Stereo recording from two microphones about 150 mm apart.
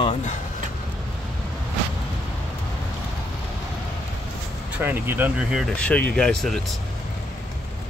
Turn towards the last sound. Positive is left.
turn(degrees=0)  # may be behind; listen again after turning